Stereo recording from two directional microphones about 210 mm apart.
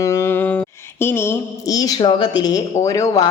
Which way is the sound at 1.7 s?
20° left (ahead or behind).